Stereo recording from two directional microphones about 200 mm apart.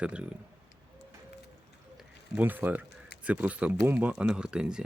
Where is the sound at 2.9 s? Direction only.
55° left (ahead or behind).